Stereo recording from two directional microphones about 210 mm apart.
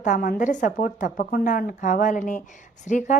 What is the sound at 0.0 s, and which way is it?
A woman's voice, 40° left (ahead or behind).